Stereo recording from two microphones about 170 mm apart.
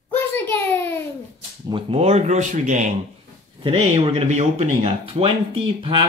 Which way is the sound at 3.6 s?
35° right (ahead or behind).